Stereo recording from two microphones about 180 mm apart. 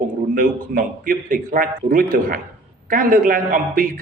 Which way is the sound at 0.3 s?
50° right (ahead or behind).